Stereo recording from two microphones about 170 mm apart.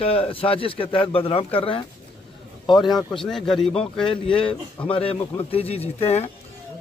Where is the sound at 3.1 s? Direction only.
Centre (ahead or behind).